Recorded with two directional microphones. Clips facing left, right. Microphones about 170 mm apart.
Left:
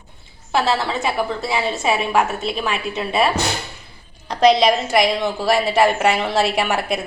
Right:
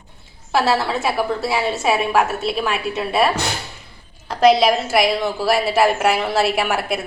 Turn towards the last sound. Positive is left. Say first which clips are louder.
# even
turn(degrees=-5)  # may be behind; listen again after turning